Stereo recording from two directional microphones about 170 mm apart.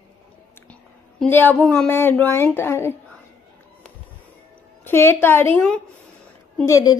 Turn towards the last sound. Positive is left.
turn(degrees=20)  # may be behind; listen again after turning